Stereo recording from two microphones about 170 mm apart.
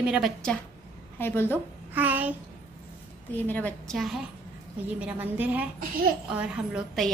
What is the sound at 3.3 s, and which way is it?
A woman's voice, 10° left (ahead or behind).